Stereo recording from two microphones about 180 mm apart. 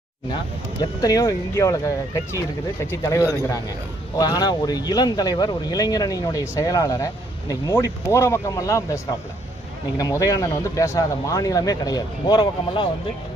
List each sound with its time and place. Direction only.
0.8 s speech: 20° left (ahead or behind)
10.0 s speech: 20° left (ahead or behind)